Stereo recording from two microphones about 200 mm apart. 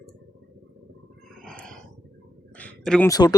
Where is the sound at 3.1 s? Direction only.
20° left (ahead or behind).